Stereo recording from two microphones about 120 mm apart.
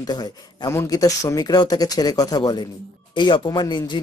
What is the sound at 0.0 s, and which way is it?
Speech, 35° left (ahead or behind).